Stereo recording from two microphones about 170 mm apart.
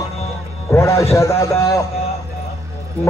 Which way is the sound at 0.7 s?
15° left (ahead or behind).